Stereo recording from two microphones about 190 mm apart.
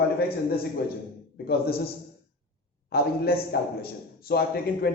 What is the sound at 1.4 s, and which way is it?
Speech, 55° left (ahead or behind).